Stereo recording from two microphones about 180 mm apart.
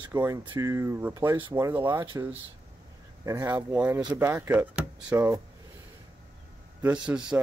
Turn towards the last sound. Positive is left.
turn(degrees=-5)  # may be behind; listen again after turning